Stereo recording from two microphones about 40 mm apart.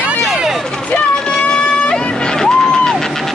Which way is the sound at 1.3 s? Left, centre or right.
Left.